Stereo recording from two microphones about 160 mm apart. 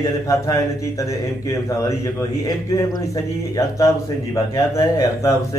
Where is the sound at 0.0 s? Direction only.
20° left (ahead or behind).